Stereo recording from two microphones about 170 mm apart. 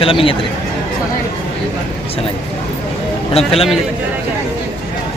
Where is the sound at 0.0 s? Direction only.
30° left (ahead or behind).